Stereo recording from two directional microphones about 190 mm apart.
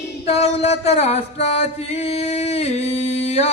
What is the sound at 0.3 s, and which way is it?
Mantra, 35° left (ahead or behind).